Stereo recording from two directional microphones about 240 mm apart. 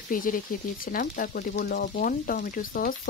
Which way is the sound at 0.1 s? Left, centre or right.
Left.